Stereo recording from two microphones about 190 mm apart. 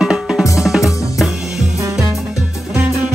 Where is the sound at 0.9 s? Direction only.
15° left (ahead or behind).